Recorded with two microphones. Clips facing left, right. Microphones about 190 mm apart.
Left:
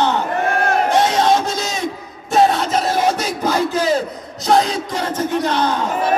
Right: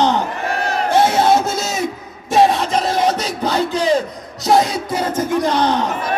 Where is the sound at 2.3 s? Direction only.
Centre (ahead or behind).